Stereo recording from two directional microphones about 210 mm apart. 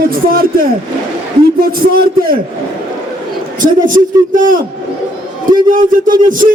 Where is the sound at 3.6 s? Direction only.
40° right (ahead or behind).